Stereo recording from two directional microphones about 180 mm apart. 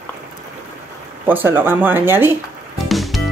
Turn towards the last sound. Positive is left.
turn(degrees=0)  # may be behind; listen again after turning